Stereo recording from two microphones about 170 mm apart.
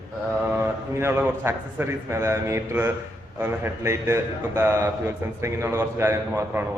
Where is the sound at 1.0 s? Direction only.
15° right (ahead or behind).